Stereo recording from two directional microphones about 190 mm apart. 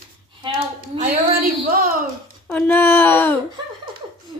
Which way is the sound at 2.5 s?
10° left (ahead or behind).